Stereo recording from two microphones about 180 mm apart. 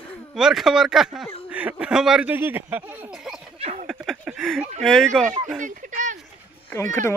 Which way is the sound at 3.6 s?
35° right (ahead or behind).